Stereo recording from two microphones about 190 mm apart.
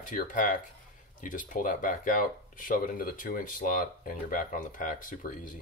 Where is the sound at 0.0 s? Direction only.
45° left (ahead or behind).